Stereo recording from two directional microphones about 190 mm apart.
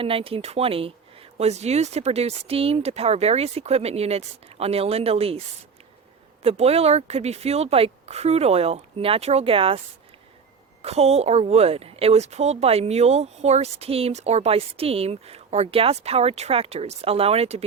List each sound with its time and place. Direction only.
0.0 s a woman's voice: 30° right (ahead or behind)
6.4 s a woman's voice: 35° right (ahead or behind)
10.8 s a woman's voice: 35° right (ahead or behind)